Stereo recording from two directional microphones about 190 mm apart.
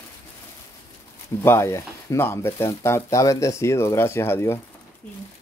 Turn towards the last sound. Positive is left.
turn(degrees=15)  # may be behind; listen again after turning